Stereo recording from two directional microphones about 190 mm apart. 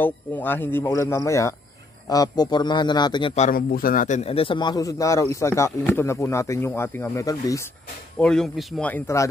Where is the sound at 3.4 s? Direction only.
45° left (ahead or behind); by 7.7 s 15° left (ahead or behind).